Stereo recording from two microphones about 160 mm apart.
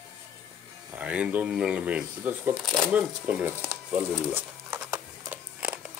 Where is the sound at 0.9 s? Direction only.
10° right (ahead or behind).